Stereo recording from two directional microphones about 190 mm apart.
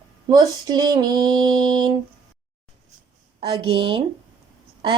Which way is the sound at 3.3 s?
25° right (ahead or behind).